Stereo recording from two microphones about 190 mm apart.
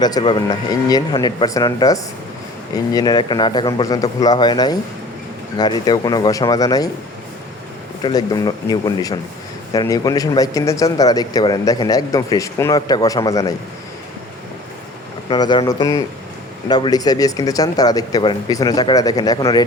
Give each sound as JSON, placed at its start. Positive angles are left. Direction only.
{"t": 0.0, "sound": "speech", "side_deg": 20}
{"t": 8.0, "sound": "speech", "side_deg": 20}
{"t": 15.3, "sound": "speech", "side_deg": 25}